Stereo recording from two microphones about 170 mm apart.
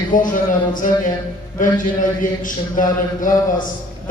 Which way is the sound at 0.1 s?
55° left (ahead or behind).